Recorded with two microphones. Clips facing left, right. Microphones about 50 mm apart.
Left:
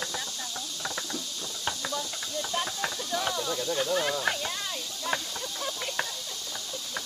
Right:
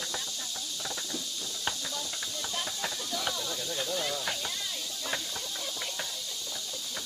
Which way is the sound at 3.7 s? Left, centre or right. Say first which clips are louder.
Left 6 dB; left.